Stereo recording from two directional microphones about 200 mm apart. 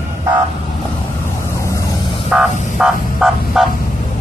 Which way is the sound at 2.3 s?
5° right (ahead or behind).